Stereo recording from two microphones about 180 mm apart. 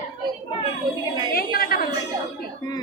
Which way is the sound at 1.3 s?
55° left (ahead or behind).